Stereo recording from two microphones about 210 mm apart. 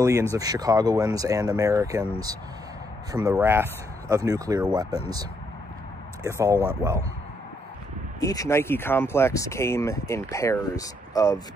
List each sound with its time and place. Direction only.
0.0 s speech: 15° right (ahead or behind)
6.2 s speech: 15° right (ahead or behind)
8.2 s speech: 15° left (ahead or behind)